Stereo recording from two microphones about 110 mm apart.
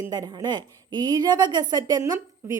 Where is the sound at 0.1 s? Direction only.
35° right (ahead or behind).